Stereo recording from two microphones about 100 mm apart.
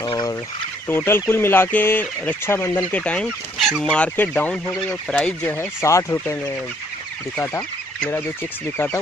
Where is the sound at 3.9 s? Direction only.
15° left (ahead or behind).